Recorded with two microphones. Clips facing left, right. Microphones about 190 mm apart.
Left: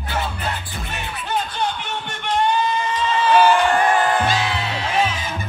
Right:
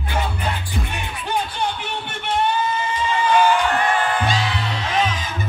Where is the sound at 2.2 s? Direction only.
10° right (ahead or behind).